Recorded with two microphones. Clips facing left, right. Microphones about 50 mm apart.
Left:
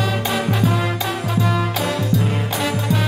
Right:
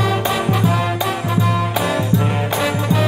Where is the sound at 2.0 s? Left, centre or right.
Right.